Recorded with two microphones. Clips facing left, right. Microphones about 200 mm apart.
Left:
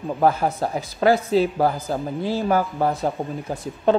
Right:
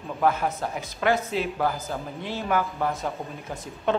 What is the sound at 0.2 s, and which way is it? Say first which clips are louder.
Speech: left 4 dB; 35° left (ahead or behind).